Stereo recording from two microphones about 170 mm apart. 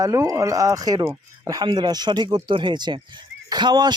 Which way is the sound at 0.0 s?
20° right (ahead or behind).